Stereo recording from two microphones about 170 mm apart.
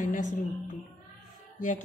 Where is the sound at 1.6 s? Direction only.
50° left (ahead or behind).